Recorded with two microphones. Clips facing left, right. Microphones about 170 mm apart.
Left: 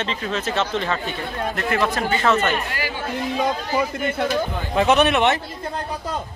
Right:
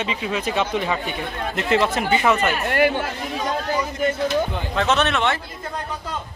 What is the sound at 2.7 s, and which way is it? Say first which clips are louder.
Speech: right 10 dB; 55° right (ahead or behind).